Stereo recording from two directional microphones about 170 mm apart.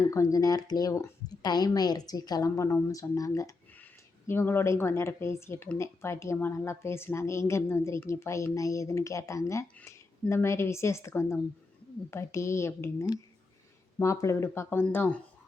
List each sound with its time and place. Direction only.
0.1 s speech: 20° left (ahead or behind)